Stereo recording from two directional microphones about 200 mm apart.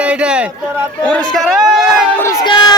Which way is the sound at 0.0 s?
5° right (ahead or behind).